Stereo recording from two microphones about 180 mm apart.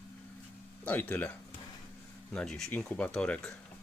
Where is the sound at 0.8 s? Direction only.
10° left (ahead or behind).